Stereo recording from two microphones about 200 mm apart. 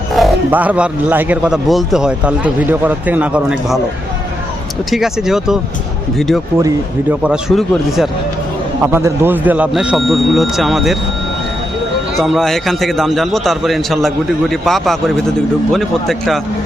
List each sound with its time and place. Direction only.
0.1 s speech: centre (ahead or behind)
4.9 s speech: centre (ahead or behind)
6.6 s speech: 15° right (ahead or behind)
7.2 s speech: 5° right (ahead or behind)
8.8 s speech: 10° right (ahead or behind)
12.2 s speech: centre (ahead or behind)